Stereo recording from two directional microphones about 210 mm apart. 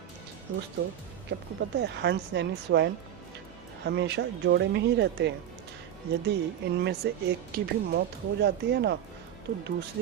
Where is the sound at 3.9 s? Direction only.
55° right (ahead or behind).